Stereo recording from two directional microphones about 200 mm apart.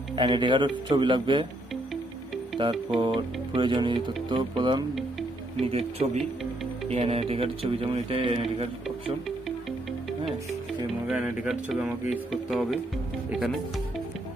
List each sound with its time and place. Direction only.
0.1 s speech: 25° right (ahead or behind)
2.5 s music: 25° right (ahead or behind)
3.0 s speech: 25° right (ahead or behind)
11.1 s speech: centre (ahead or behind)